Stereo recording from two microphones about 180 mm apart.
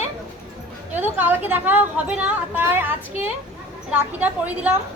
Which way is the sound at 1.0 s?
10° right (ahead or behind).